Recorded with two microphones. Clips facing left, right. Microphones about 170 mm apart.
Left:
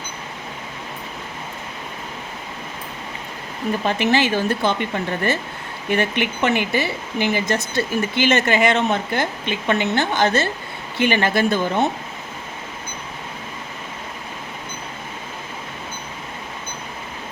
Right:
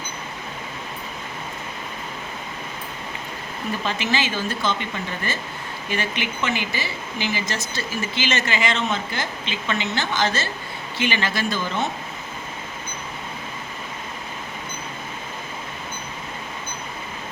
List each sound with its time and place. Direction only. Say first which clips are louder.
3.8 s speech: left 7 dB; 60° left (ahead or behind)